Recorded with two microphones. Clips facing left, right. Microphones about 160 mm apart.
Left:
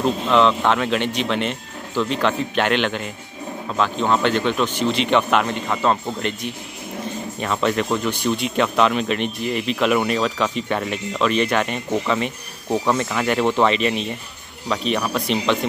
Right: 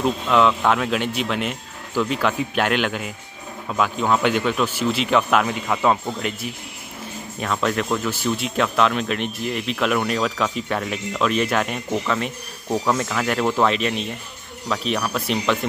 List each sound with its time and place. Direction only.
0.0 s speech: 5° right (ahead or behind)